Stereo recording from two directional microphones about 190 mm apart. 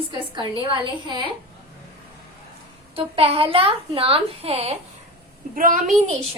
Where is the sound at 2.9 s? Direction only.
30° right (ahead or behind).